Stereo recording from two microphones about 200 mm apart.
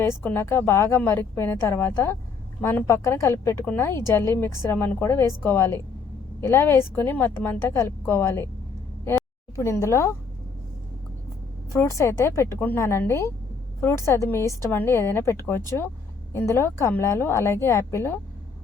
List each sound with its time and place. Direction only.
0.0 s a woman's voice: 10° left (ahead or behind)
11.7 s a woman's voice: 15° left (ahead or behind)